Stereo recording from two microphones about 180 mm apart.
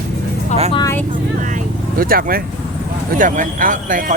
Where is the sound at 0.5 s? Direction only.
40° left (ahead or behind).